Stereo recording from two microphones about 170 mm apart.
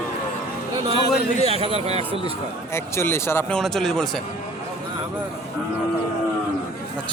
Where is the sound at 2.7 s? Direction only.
15° left (ahead or behind).